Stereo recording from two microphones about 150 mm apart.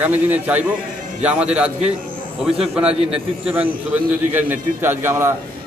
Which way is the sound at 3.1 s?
10° right (ahead or behind).